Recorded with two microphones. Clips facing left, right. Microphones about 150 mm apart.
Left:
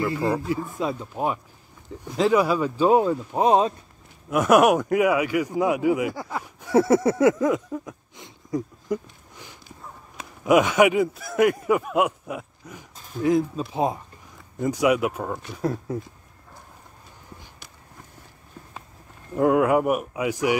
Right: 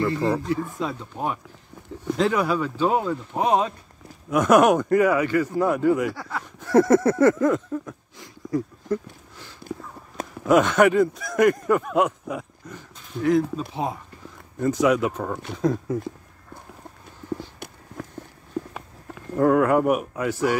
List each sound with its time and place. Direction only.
0.0 s speech: 10° left (ahead or behind)
3.3 s speech: 30° left (ahead or behind)
4.3 s speech: 5° left (ahead or behind)
8.2 s a sound: 15° left (ahead or behind)
10.4 s speech: 10° left (ahead or behind)
17.6 s clip-clop: 55° right (ahead or behind)
18.0 s clip-clop: 90° right
18.6 s walk: 80° right
19.3 s speech: 10° left (ahead or behind)